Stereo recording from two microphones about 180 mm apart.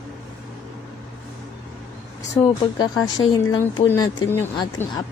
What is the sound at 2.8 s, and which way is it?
A woman's voice, 20° left (ahead or behind).